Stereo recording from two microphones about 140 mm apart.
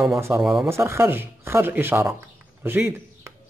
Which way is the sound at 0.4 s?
5° right (ahead or behind).